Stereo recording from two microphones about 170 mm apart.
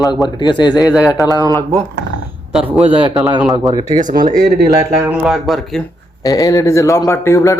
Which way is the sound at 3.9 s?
50° right (ahead or behind).